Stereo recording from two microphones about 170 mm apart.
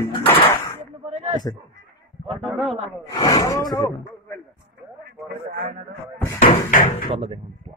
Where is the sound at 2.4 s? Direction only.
Centre (ahead or behind).